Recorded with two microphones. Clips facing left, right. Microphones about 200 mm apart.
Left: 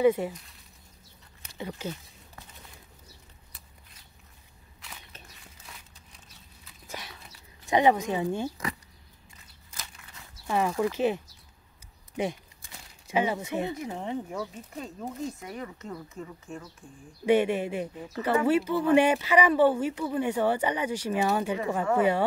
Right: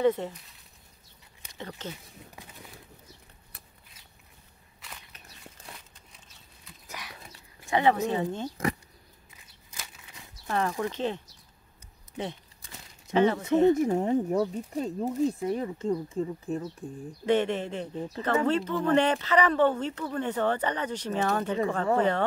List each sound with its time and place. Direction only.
0.0 s speech: 10° left (ahead or behind)
1.6 s speech: 10° left (ahead or behind)
6.9 s a sound: 25° left (ahead or behind)
7.6 s speech: 15° left (ahead or behind)
10.4 s speech: 10° left (ahead or behind)
13.1 s speech: 10° left (ahead or behind)
13.7 s speech: 45° right (ahead or behind)
17.3 s speech: 10° left (ahead or behind)
17.9 s speech: 30° right (ahead or behind)
18.2 s speech: 10° left (ahead or behind)